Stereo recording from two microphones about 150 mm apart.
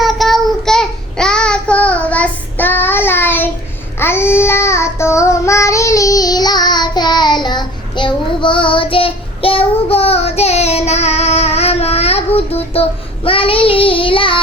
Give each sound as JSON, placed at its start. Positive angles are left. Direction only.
{"t": 0.0, "sound": "child singing", "side_deg": 0}